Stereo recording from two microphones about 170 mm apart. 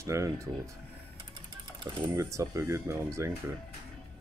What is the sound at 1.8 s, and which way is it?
Speech, 30° right (ahead or behind).